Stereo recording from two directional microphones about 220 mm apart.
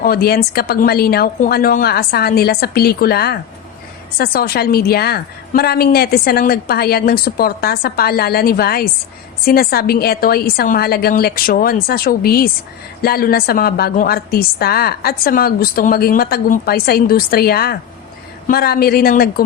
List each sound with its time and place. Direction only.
0.0 s a woman's voice: 45° left (ahead or behind)